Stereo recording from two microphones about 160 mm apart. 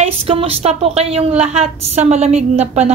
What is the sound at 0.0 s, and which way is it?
Speech, 35° right (ahead or behind).